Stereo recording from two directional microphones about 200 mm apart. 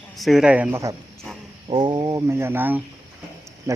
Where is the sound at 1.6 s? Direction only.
25° right (ahead or behind).